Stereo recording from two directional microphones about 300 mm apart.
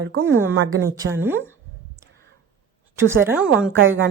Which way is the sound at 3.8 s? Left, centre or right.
Right.